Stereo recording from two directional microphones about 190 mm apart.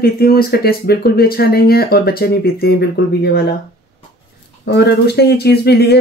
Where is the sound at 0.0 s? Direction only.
55° left (ahead or behind).